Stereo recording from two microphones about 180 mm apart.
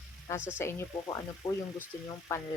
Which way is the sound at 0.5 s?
15° left (ahead or behind).